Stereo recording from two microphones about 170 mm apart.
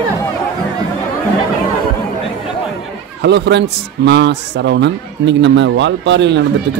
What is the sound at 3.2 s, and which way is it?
A man's voice, 90° right.